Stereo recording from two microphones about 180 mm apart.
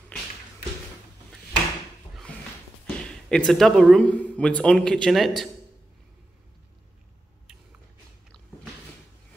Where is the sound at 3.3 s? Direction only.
5° left (ahead or behind).